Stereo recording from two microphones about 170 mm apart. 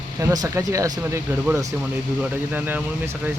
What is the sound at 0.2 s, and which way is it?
Speech, 20° right (ahead or behind).